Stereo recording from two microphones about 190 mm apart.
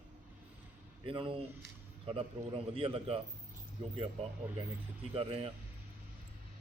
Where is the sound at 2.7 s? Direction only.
30° right (ahead or behind).